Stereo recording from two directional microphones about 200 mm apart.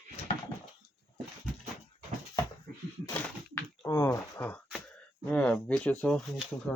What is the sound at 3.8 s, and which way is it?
Speech, 15° left (ahead or behind).